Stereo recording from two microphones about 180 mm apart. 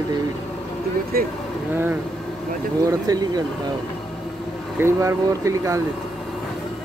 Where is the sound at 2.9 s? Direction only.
20° right (ahead or behind).